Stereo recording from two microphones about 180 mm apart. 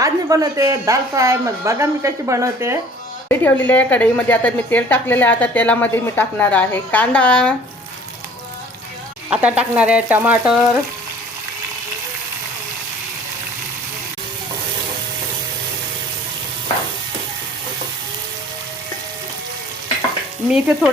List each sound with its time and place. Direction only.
0.0 s a woman's voice: 20° right (ahead or behind)
3.2 s a woman's voice: 10° left (ahead or behind)
9.3 s a woman's voice: 5° right (ahead or behind)
20.5 s frying: centre (ahead or behind)